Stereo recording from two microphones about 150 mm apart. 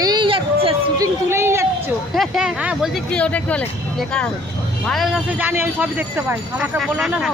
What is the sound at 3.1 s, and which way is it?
Speech, 10° left (ahead or behind).